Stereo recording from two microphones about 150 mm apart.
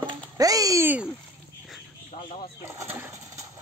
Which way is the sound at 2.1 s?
70° left (ahead or behind).